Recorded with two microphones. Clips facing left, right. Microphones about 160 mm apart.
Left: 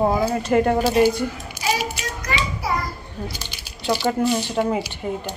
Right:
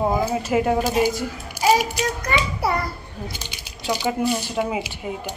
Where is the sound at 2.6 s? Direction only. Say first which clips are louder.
Right 2 dB; 65° right (ahead or behind).